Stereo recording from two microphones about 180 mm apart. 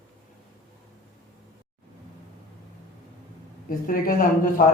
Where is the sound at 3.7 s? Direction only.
50° left (ahead or behind).